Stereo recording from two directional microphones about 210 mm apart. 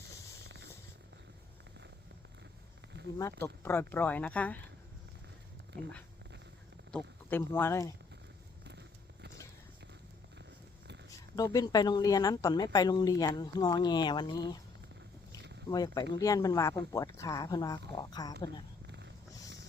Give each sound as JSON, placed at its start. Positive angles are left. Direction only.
{"t": 0.4, "sound": "a sound", "side_deg": -55}
{"t": 3.2, "sound": "speech", "side_deg": 15}
{"t": 6.9, "sound": "speech", "side_deg": 10}
{"t": 11.3, "sound": "speech", "side_deg": 15}
{"t": 15.7, "sound": "speech", "side_deg": 20}
{"t": 18.9, "sound": "dog", "side_deg": -55}